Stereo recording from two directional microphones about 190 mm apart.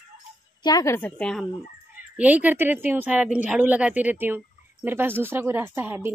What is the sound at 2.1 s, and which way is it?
Speech, 10° right (ahead or behind).